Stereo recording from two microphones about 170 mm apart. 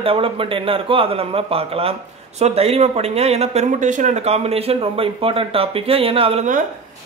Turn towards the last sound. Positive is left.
turn(degrees=-35)  # may be behind; listen again after turning